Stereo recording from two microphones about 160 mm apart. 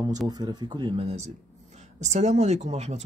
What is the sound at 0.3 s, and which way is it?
Speech, 25° right (ahead or behind).